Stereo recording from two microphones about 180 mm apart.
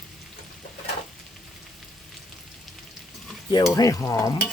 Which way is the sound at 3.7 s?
20° left (ahead or behind).